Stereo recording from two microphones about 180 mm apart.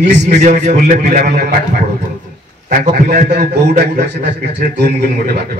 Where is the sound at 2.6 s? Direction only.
45° right (ahead or behind); by 4.7 s 65° right (ahead or behind).